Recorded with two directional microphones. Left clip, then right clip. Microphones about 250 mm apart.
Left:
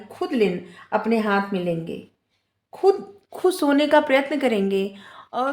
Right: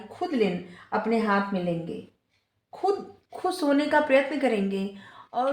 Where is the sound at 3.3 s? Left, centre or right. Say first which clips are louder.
Left 5 dB; left.